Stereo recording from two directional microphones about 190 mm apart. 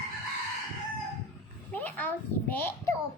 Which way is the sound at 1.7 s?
10° left (ahead or behind).